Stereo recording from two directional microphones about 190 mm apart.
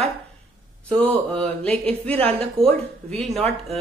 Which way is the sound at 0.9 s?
5° left (ahead or behind).